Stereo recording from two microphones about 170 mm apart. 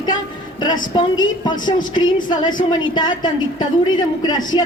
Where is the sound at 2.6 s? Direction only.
25° left (ahead or behind).